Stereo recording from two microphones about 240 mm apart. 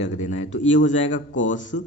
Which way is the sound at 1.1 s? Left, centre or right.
Left.